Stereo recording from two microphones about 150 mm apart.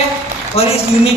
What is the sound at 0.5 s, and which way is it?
Speech, 40° left (ahead or behind).